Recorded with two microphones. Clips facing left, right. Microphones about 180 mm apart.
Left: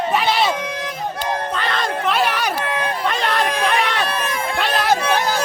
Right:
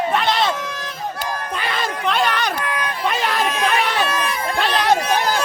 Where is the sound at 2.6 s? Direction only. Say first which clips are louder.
Left 2 dB; 25° left (ahead or behind).